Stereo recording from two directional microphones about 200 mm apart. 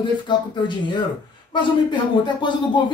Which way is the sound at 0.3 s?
20° left (ahead or behind).